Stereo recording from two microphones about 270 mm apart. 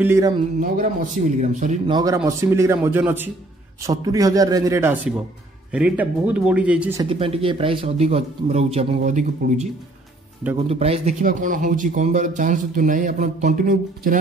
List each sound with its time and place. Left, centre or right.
0.0 s speech: centre
0.6 s speech: right
2.0 s speech: centre
7.1 s speech: centre
10.7 s speech: right